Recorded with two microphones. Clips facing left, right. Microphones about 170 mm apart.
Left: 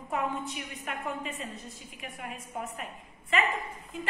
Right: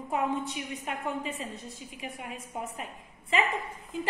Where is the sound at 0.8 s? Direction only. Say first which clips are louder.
Right 1 dB; 30° right (ahead or behind).